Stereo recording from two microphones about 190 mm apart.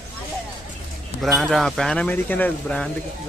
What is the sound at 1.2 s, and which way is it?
Speech, centre (ahead or behind).